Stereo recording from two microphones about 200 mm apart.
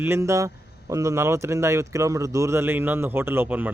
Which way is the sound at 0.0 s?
15° right (ahead or behind).